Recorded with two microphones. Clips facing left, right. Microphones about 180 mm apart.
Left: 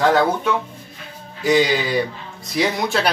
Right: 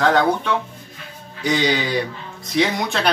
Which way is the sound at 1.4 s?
Centre (ahead or behind).